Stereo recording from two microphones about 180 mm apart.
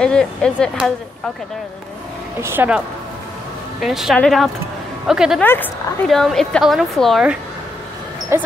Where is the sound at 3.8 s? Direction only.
Centre (ahead or behind).